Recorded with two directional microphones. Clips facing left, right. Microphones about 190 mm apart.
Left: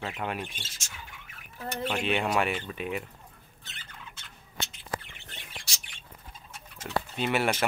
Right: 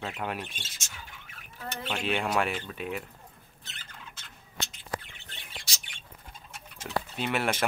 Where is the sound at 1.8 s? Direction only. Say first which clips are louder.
Left 2 dB; centre (ahead or behind).